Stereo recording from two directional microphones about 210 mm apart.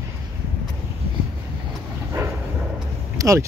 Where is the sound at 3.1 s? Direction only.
15° right (ahead or behind).